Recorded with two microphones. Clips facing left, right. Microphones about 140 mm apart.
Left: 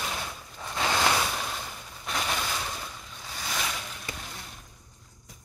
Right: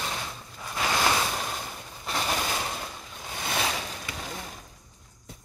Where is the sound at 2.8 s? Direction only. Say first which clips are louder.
Right 3 dB; 25° right (ahead or behind).